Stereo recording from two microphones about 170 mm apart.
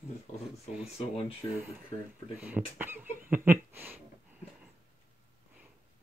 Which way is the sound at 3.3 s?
10° right (ahead or behind).